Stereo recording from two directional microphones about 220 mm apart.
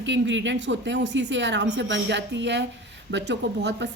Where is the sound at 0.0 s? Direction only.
55° right (ahead or behind).